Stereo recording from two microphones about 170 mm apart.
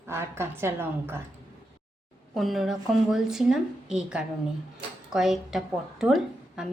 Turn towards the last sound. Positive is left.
turn(degrees=0)  # may be behind; listen again after turning